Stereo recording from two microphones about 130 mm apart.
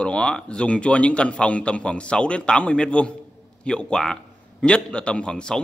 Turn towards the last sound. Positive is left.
turn(degrees=5)  # may be behind; listen again after turning